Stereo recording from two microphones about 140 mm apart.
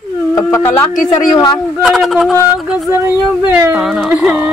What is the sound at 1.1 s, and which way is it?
Speech, 30° left (ahead or behind).